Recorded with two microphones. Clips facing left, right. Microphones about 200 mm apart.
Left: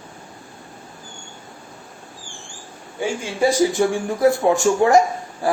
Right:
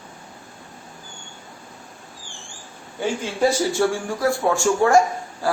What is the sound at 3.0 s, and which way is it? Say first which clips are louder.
Speech: left 1 dB; 10° left (ahead or behind).